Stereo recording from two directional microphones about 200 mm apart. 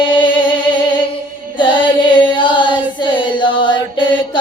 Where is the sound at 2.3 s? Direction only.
25° left (ahead or behind).